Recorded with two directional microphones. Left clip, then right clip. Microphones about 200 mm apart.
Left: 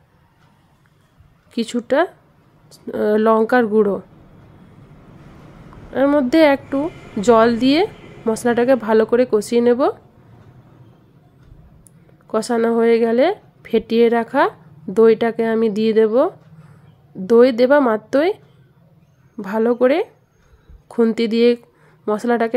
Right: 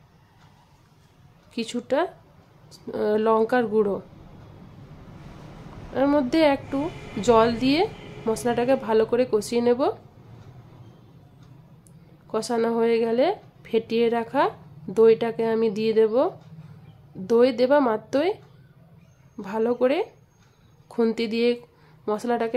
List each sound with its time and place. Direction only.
1.5 s a woman's voice: 25° left (ahead or behind)
5.9 s a woman's voice: 20° left (ahead or behind)
12.3 s a woman's voice: 25° left (ahead or behind)
19.3 s a woman's voice: 25° left (ahead or behind)